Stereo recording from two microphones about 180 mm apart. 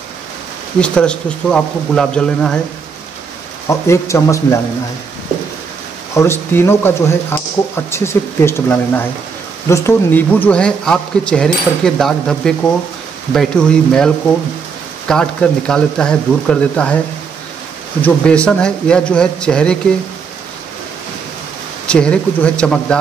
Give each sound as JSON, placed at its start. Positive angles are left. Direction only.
{"t": 0.7, "sound": "speech", "side_deg": 5}
{"t": 3.6, "sound": "speech", "side_deg": 15}
{"t": 6.1, "sound": "speech", "side_deg": 15}
{"t": 18.0, "sound": "speech", "side_deg": 5}
{"t": 21.8, "sound": "speech", "side_deg": 5}